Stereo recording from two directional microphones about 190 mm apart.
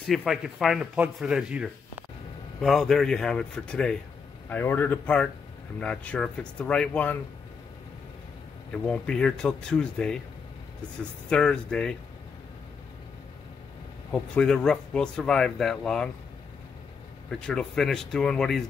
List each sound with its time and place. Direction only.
0.0 s a man's voice: centre (ahead or behind)
8.7 s speech: 5° left (ahead or behind)
11.2 s speech: 5° left (ahead or behind)
14.1 s speech: 5° left (ahead or behind)
17.3 s speech: 5° left (ahead or behind)